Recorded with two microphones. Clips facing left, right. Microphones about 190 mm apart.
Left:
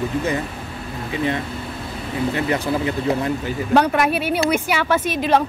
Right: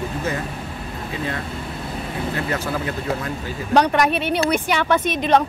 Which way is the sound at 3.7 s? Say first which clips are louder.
Even; 5° left (ahead or behind).